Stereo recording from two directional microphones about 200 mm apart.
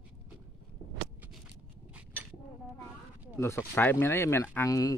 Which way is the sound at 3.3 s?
15° left (ahead or behind).